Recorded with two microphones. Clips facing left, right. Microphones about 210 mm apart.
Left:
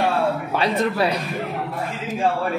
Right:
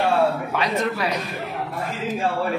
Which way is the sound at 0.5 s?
30° left (ahead or behind).